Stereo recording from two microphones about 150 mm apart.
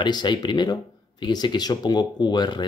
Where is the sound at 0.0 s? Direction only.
30° left (ahead or behind).